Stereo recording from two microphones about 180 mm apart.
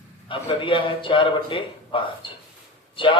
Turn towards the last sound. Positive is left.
turn(degrees=30)  # may be behind; listen again after turning